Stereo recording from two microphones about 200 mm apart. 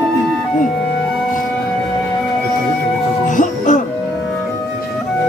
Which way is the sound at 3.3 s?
40° left (ahead or behind).